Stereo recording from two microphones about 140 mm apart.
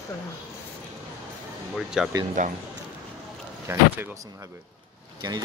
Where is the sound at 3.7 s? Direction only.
15° right (ahead or behind).